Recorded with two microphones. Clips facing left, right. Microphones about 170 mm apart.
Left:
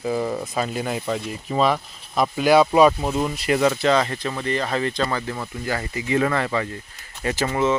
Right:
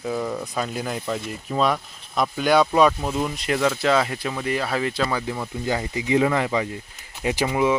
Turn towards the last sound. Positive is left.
turn(degrees=-10)  # may be behind; listen again after turning